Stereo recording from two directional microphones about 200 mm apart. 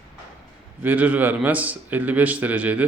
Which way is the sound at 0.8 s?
10° right (ahead or behind).